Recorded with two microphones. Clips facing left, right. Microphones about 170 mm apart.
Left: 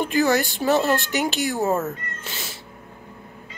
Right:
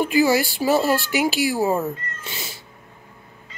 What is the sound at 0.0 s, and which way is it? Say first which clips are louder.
Speech: right 2 dB; 5° right (ahead or behind).